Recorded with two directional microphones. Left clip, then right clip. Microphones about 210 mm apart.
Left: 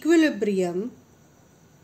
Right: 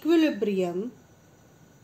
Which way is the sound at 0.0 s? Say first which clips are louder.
Left 3 dB; 20° left (ahead or behind).